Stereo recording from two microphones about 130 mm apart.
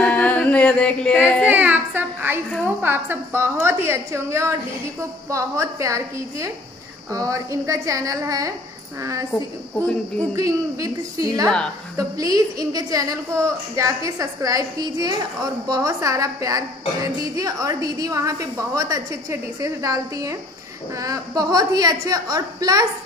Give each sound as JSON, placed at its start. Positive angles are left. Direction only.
{"t": 0.0, "sound": "singing", "side_deg": 10}
{"t": 1.5, "sound": "a woman's voice", "side_deg": -15}
{"t": 10.3, "sound": "a woman's voice", "side_deg": -25}